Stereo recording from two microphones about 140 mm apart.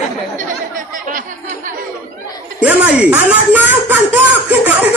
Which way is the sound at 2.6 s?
10° right (ahead or behind).